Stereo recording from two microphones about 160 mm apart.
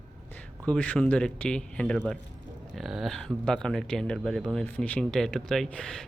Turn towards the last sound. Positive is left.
turn(degrees=5)  # may be behind; listen again after turning